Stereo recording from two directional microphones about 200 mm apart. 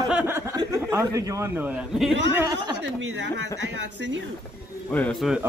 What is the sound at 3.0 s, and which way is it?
Speech, 60° right (ahead or behind).